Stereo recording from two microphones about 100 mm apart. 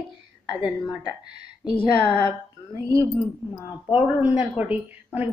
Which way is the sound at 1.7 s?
55° left (ahead or behind).